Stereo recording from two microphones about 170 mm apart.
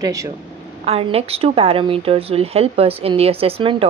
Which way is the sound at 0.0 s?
20° right (ahead or behind).